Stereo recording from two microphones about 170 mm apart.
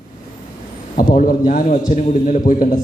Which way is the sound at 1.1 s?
55° left (ahead or behind).